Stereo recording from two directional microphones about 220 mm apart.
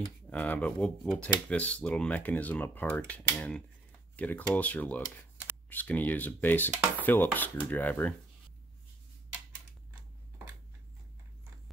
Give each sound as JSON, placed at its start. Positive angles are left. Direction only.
{"t": 0.0, "sound": "speech", "side_deg": 5}